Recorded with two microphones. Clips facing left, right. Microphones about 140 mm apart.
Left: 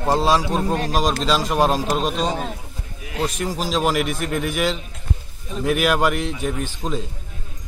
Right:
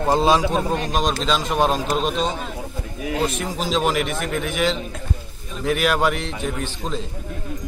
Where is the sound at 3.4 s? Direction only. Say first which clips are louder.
Even; centre (ahead or behind).